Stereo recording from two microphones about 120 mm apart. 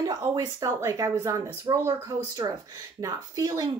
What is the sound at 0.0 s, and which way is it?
Speech, 35° right (ahead or behind).